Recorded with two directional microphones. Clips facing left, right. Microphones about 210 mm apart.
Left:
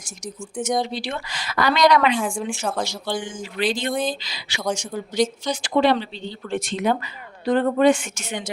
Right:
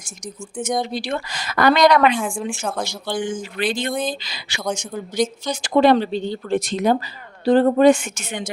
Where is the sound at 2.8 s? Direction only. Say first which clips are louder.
Right 3 dB; 55° right (ahead or behind).